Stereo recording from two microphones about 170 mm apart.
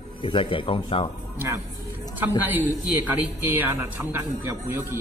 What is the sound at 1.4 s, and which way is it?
Speech, 10° right (ahead or behind).